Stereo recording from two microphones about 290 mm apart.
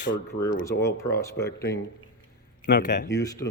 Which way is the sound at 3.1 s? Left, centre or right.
Centre.